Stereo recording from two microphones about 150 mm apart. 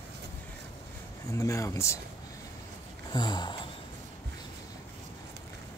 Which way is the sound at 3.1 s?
30° left (ahead or behind).